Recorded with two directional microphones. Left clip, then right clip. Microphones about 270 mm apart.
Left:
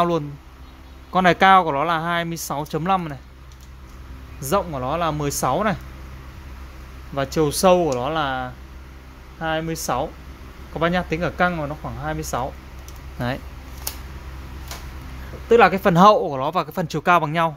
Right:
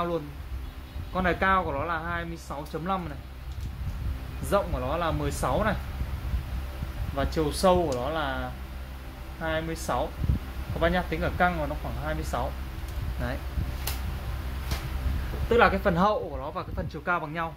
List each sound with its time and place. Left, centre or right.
1.1 s speech: left
4.5 s speech: left
7.2 s speech: left
15.5 s speech: left